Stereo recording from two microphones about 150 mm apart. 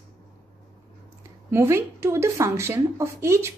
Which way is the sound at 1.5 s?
15° right (ahead or behind).